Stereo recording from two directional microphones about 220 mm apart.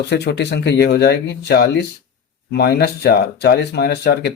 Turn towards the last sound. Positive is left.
turn(degrees=45)  # may be behind; listen again after turning